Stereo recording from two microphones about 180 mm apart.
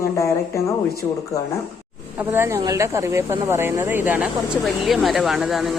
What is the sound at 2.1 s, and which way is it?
Speech, 15° right (ahead or behind).